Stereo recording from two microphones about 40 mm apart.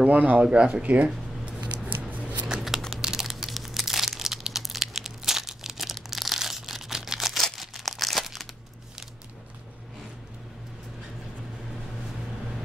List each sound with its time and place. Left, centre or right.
0.0 s speech: right
0.4 s speech: right
1.0 s a sound: right
1.9 s scissors: right
2.4 s crumpling: centre
6.1 s a sound: centre
7.5 s crumpling: centre